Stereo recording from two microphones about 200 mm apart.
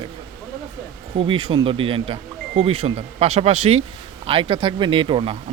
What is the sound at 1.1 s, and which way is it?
Speech, 25° right (ahead or behind).